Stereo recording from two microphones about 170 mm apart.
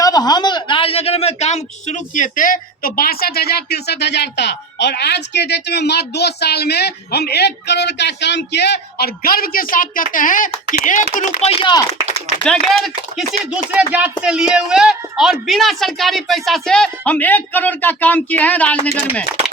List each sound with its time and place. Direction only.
0.0 s speech: 25° left (ahead or behind); by 11.5 s 50° left (ahead or behind)
11.6 s speech: 25° left (ahead or behind)
12.5 s speech: centre (ahead or behind)